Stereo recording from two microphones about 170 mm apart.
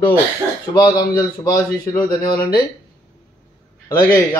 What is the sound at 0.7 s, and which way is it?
Speech, 25° left (ahead or behind).